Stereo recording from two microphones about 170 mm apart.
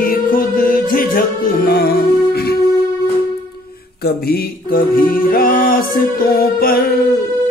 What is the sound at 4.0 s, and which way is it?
Music, 65° left (ahead or behind).